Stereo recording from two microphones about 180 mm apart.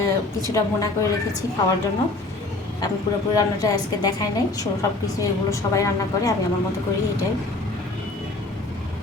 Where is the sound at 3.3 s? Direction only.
20° left (ahead or behind).